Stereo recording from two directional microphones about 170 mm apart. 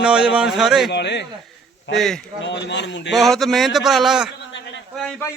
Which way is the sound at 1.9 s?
5° left (ahead or behind).